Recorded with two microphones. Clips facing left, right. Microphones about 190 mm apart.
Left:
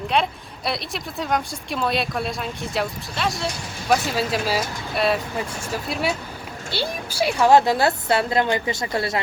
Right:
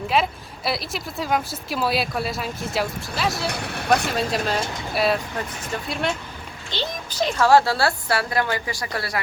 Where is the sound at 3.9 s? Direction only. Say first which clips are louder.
Even; centre (ahead or behind).